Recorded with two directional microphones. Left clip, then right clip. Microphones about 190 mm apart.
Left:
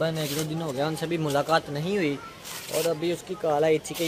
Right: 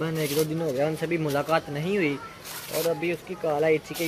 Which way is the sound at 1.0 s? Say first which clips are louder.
Even; 20° left (ahead or behind).